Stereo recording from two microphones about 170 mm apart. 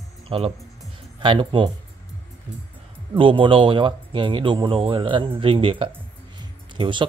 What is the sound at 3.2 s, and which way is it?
Speech, 30° right (ahead or behind).